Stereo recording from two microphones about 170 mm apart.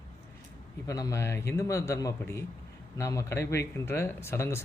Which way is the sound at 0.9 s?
20° left (ahead or behind).